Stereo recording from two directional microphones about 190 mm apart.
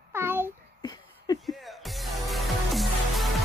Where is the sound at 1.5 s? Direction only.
Centre (ahead or behind).